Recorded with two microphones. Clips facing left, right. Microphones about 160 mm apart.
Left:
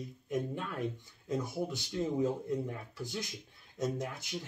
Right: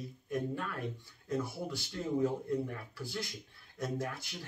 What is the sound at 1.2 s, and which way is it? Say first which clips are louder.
Speech: left 2 dB; 20° left (ahead or behind).